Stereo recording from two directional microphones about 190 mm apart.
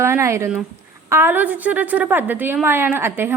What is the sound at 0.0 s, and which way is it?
A woman's voice, 15° right (ahead or behind).